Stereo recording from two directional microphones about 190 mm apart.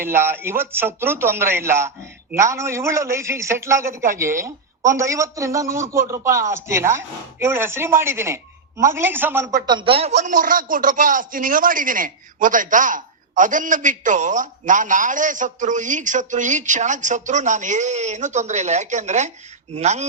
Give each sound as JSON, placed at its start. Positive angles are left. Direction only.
{"t": 0.0, "sound": "speech", "side_deg": -10}
{"t": 9.6, "sound": "a man's voice", "side_deg": -25}
{"t": 10.2, "sound": "a man's voice", "side_deg": -45}